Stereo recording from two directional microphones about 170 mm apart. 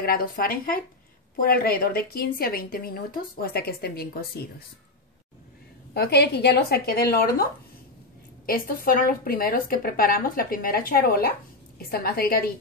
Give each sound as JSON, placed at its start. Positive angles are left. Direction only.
{"t": 0.0, "sound": "a woman's voice", "side_deg": 60}
{"t": 5.9, "sound": "a woman's voice", "side_deg": 70}
{"t": 8.5, "sound": "a woman's voice", "side_deg": 55}